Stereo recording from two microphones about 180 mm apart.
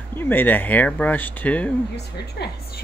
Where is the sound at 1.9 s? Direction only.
65° left (ahead or behind).